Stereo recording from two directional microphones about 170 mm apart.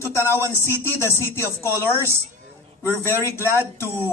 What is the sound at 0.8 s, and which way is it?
Speech, 15° left (ahead or behind).